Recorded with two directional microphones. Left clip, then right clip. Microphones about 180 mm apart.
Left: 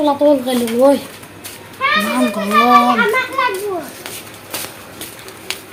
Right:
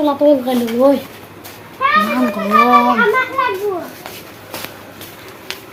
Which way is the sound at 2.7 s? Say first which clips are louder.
Even; 50° left (ahead or behind).